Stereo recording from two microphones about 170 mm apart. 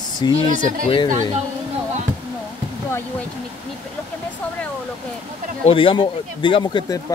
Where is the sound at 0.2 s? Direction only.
25° left (ahead or behind).